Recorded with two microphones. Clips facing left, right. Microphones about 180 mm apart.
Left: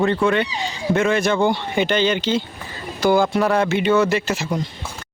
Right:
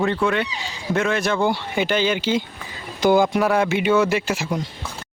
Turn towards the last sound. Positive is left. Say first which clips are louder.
# left 1 dB
turn(degrees=-10)  # may be behind; listen again after turning